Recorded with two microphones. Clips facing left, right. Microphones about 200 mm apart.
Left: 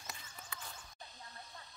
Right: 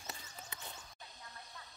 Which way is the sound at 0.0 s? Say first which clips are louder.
Right 2 dB; 25° right (ahead or behind).